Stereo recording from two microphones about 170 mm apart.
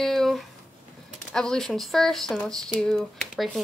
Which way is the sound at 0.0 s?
Centre (ahead or behind).